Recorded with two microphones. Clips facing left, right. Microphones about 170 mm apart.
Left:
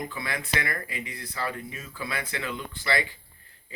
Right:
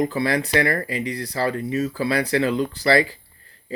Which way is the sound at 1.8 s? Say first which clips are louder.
Right 12 dB; 35° right (ahead or behind).